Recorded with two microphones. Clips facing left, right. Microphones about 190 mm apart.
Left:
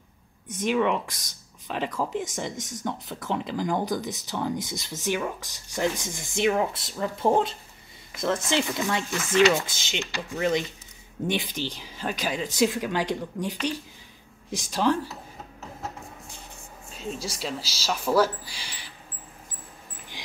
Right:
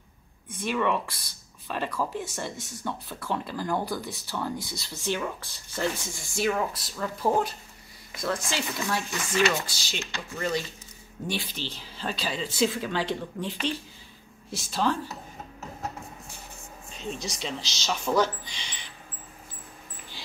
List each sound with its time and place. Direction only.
0.5 s speech: 15° left (ahead or behind)
16.9 s speech: 5° left (ahead or behind)